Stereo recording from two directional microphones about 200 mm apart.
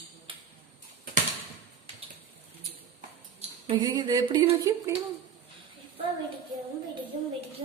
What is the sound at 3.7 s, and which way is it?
A woman's voice, 20° right (ahead or behind).